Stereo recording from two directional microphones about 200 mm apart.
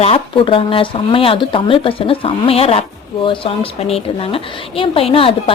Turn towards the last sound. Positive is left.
turn(degrees=25)  # may be behind; listen again after turning